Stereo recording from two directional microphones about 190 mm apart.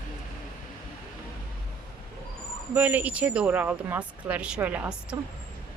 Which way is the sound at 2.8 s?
10° right (ahead or behind).